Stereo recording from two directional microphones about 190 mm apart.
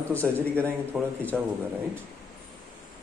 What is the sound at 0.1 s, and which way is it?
A man's voice, 10° right (ahead or behind).